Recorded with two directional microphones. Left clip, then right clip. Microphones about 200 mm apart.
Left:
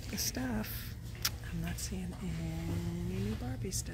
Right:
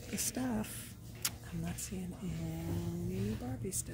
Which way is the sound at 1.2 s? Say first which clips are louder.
Left 4 dB; 10° right (ahead or behind).